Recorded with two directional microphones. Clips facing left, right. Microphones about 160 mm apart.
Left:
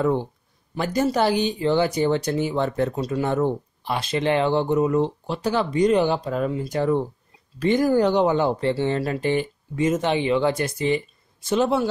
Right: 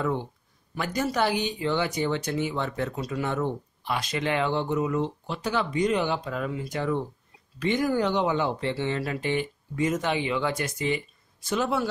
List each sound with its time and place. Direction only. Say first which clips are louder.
0.0 s speech: left 6 dB; 35° left (ahead or behind)
9.8 s speech: left 5 dB; 25° left (ahead or behind)